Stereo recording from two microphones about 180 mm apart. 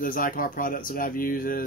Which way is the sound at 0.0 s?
50° left (ahead or behind).